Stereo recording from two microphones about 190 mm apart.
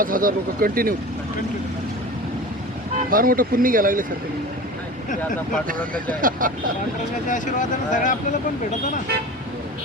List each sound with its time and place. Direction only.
0.0 s speech: 45° right (ahead or behind)
3.1 s speech: 50° right (ahead or behind)
6.4 s speech: 45° right (ahead or behind)
7.3 s speech: 40° left (ahead or behind)